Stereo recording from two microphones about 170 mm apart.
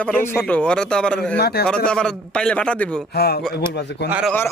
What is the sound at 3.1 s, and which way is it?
Speech, 70° left (ahead or behind).